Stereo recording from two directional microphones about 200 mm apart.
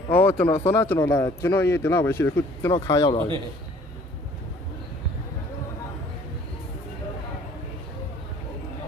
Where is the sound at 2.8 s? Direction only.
25° left (ahead or behind).